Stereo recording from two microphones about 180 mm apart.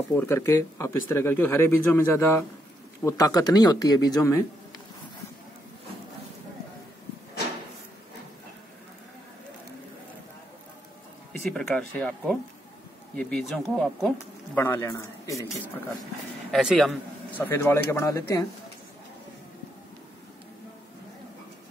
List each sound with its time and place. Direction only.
0.1 s speech: 15° left (ahead or behind)
11.5 s speech: 5° left (ahead or behind)
14.1 s speech: 10° left (ahead or behind)
16.5 s speech: centre (ahead or behind)
17.4 s speech: 15° left (ahead or behind)